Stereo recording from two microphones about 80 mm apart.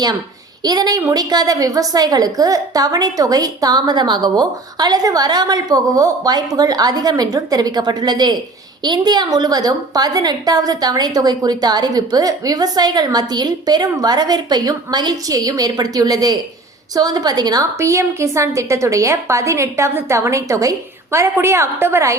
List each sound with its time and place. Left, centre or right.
0.6 s a woman's voice: right
17.7 s a woman's voice: right